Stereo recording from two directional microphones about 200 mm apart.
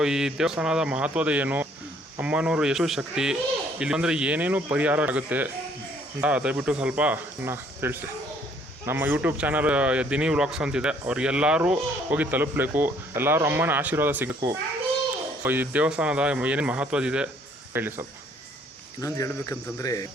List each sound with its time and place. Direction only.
0.0 s speech: 5° right (ahead or behind)
19.0 s cricket: 15° left (ahead or behind)